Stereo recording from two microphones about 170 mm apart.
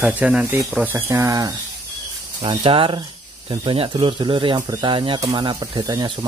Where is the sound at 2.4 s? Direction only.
30° right (ahead or behind).